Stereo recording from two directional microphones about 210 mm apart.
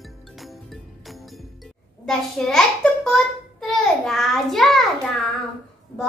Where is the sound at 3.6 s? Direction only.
Centre (ahead or behind).